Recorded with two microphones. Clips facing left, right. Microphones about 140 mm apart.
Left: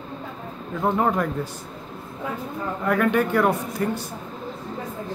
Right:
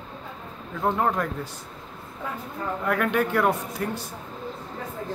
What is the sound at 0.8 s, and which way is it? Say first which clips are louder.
Speech: left 2 dB; 5° left (ahead or behind).